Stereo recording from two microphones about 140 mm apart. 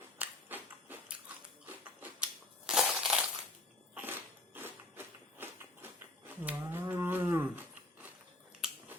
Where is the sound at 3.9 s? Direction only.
15° right (ahead or behind).